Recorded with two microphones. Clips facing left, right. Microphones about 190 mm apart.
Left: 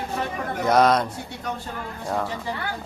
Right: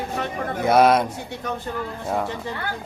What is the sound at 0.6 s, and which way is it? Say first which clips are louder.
Speech: right 2 dB; 10° right (ahead or behind).